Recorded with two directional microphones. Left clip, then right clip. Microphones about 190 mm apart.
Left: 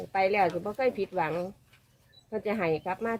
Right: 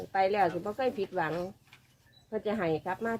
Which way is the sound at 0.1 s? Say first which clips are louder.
Left 2 dB; 10° left (ahead or behind).